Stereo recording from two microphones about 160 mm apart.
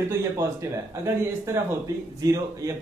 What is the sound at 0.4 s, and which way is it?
A man's voice, 15° right (ahead or behind).